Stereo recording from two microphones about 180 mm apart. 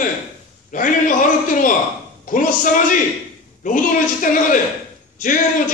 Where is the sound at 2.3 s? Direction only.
45° left (ahead or behind).